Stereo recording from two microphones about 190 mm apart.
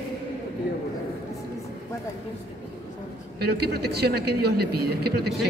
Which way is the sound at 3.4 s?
60° right (ahead or behind).